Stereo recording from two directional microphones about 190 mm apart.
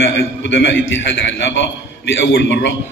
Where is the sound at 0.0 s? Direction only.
70° left (ahead or behind).